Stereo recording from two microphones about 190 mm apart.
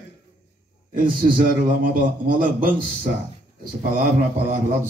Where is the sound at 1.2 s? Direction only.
40° right (ahead or behind).